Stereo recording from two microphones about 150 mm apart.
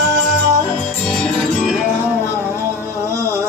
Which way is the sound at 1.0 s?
5° left (ahead or behind).